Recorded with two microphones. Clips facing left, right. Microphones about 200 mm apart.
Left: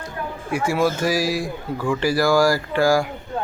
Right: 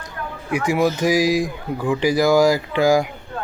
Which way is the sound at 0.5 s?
15° right (ahead or behind).